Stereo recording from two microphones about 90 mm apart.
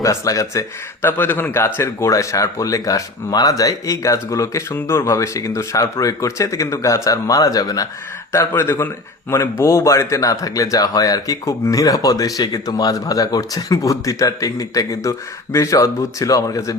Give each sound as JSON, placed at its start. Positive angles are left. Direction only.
{"t": 0.0, "sound": "speech", "side_deg": 35}
{"t": 1.0, "sound": "speech", "side_deg": 20}
{"t": 8.3, "sound": "speech", "side_deg": 30}